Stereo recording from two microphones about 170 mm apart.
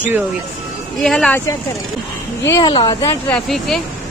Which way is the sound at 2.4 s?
20° left (ahead or behind).